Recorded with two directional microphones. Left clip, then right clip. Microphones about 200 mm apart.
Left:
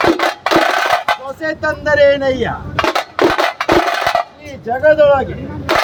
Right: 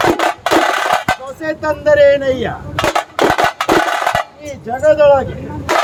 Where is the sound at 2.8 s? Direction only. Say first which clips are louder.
Even; 45° right (ahead or behind).